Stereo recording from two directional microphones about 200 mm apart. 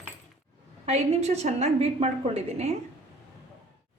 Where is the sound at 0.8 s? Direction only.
30° right (ahead or behind).